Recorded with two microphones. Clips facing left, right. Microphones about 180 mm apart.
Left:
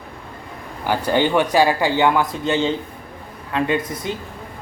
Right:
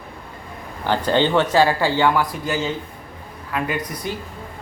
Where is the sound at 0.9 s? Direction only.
10° left (ahead or behind).